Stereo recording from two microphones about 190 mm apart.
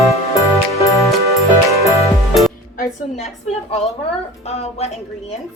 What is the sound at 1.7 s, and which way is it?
Music, 15° right (ahead or behind).